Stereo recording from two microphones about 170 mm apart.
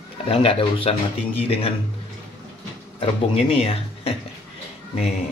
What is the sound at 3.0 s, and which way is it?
Speech, 35° left (ahead or behind).